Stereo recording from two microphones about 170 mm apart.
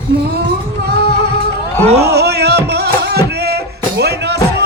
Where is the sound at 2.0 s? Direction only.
70° right (ahead or behind).